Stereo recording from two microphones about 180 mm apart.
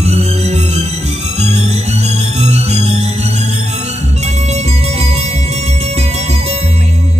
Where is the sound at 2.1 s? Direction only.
35° right (ahead or behind).